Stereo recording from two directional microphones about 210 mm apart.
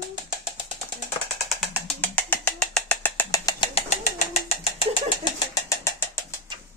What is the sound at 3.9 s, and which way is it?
Bird, 30° left (ahead or behind).